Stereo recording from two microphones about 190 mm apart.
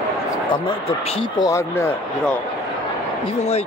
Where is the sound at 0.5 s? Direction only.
25° left (ahead or behind).